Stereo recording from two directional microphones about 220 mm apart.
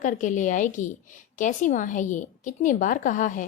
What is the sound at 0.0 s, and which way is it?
A woman's voice, 35° left (ahead or behind).